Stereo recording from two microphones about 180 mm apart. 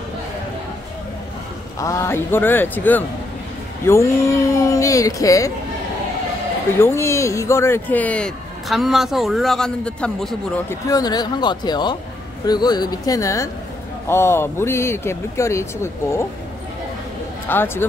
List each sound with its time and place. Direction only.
1.8 s a man's voice: 15° left (ahead or behind)
6.8 s a man's voice: 15° left (ahead or behind)
10.9 s a man's voice: 20° left (ahead or behind)
17.5 s a man's voice: 10° left (ahead or behind)